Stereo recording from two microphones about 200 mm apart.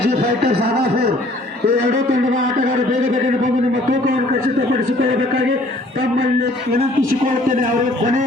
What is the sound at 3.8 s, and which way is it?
Speech, 45° right (ahead or behind).